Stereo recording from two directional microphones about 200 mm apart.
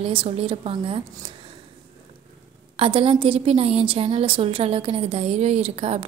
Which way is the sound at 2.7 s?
30° right (ahead or behind).